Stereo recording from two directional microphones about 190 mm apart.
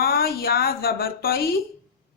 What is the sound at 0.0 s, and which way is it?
Speech, 50° left (ahead or behind).